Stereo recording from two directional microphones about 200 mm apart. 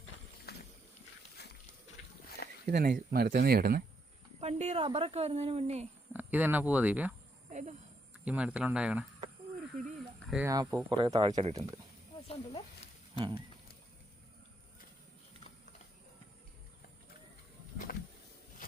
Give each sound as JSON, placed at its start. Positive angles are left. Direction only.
{"t": 0.5, "sound": "a sound", "side_deg": 55}
{"t": 2.6, "sound": "speech", "side_deg": -50}
{"t": 4.4, "sound": "speech", "side_deg": -35}
{"t": 6.1, "sound": "speech", "side_deg": -10}
{"t": 7.5, "sound": "a sound", "side_deg": -35}
{"t": 8.1, "sound": "speech", "side_deg": -5}
{"t": 10.2, "sound": "speech", "side_deg": -5}
{"t": 10.5, "sound": "speech", "side_deg": -15}
{"t": 12.3, "sound": "snake", "side_deg": 30}
{"t": 13.1, "sound": "speech", "side_deg": -25}
{"t": 17.9, "sound": "a sound", "side_deg": 50}